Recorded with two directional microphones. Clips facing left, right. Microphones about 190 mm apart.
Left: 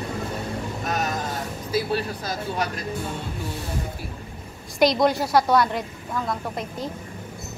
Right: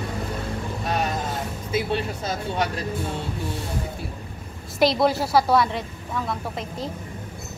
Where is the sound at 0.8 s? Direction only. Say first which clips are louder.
Right 2 dB; 30° right (ahead or behind).